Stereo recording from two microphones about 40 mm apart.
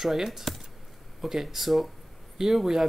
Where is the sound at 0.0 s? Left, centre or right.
Centre.